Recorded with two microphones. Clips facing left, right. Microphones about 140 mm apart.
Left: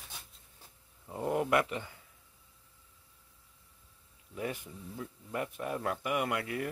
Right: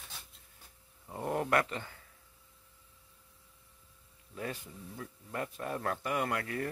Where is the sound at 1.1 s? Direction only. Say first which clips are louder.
Left 2 dB; 15° left (ahead or behind).